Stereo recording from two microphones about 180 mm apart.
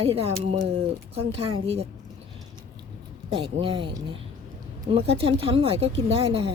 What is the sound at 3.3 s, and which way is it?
Speech, 30° right (ahead or behind).